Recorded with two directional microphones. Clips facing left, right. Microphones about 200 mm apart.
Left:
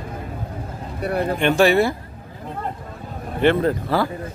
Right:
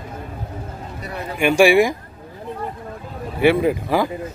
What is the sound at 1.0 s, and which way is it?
Speech, 55° left (ahead or behind).